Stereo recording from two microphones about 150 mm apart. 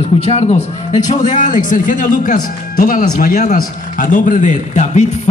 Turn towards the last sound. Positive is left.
turn(degrees=55)  # may be behind; listen again after turning